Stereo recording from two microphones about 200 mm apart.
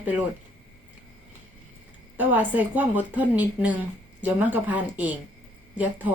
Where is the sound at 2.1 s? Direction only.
10° right (ahead or behind).